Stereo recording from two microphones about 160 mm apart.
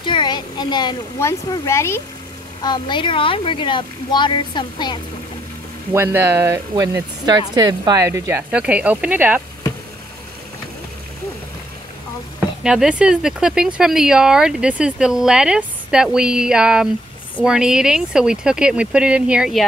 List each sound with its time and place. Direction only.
0.0 s speech: 30° left (ahead or behind)
2.6 s speech: 30° left (ahead or behind)
5.9 s speech: 15° right (ahead or behind)
12.6 s speech: 5° right (ahead or behind)